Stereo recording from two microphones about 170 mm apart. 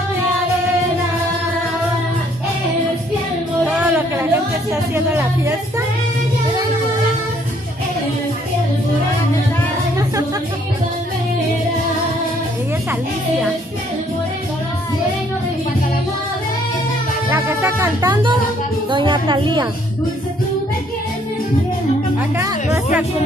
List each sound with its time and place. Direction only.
3.7 s a sound: 10° right (ahead or behind)
17.3 s speech: 15° right (ahead or behind)
18.9 s a woman's voice: 25° right (ahead or behind)